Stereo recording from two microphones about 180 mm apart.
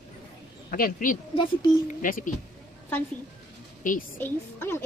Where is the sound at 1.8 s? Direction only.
45° left (ahead or behind).